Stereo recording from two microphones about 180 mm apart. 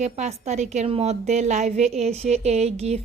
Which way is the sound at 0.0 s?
40° right (ahead or behind).